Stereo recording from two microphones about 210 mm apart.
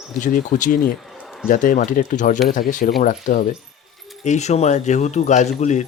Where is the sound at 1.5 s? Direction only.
40° left (ahead or behind).